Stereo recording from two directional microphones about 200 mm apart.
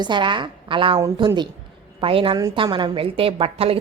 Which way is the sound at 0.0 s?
25° right (ahead or behind).